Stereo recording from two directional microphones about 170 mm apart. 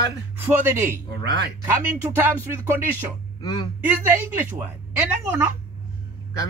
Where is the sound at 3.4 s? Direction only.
25° left (ahead or behind).